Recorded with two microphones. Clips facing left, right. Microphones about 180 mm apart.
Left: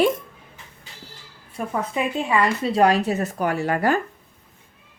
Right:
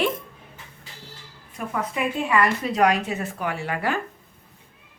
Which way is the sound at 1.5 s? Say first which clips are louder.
Left 2 dB; 25° left (ahead or behind).